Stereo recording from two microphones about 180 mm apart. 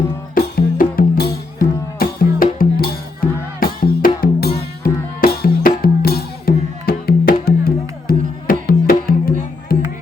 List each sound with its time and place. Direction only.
0.3 s music: 55° left (ahead or behind)